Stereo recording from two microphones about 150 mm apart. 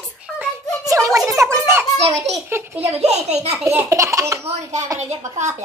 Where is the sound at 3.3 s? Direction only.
10° right (ahead or behind).